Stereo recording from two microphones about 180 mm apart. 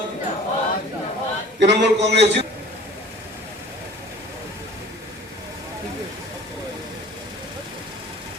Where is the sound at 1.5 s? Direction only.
75° right (ahead or behind).